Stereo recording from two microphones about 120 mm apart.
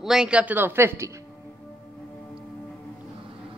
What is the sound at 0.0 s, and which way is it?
Speech, 5° right (ahead or behind).